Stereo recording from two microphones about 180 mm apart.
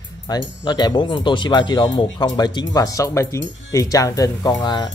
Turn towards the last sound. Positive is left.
turn(degrees=25)  # may be behind; listen again after turning